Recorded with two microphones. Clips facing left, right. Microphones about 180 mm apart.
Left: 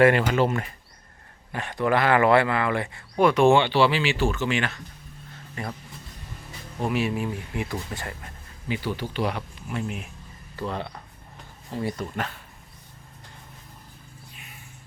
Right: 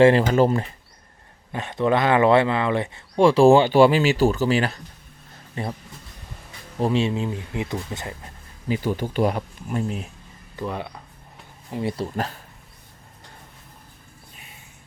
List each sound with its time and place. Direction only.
0.0 s speech: 30° right (ahead or behind)
1.5 s speech: 20° right (ahead or behind)
6.7 s speech: 30° right (ahead or behind)
8.6 s speech: 40° right (ahead or behind)
10.6 s speech: 10° right (ahead or behind)
11.7 s speech: 25° right (ahead or behind)